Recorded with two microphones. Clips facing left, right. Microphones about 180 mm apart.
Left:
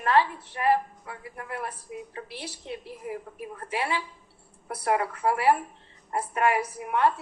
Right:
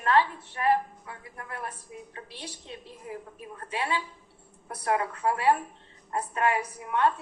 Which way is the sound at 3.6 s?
25° left (ahead or behind).